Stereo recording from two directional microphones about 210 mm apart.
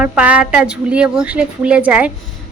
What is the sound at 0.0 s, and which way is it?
A woman's voice, 5° right (ahead or behind).